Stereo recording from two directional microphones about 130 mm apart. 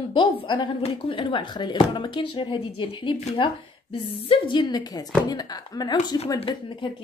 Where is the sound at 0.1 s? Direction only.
40° left (ahead or behind).